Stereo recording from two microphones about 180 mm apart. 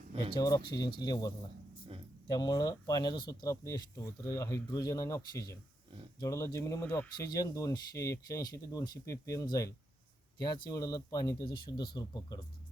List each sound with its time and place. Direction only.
0.1 s a sound: 25° right (ahead or behind)
0.3 s speech: 20° left (ahead or behind)
2.3 s speech: 20° left (ahead or behind)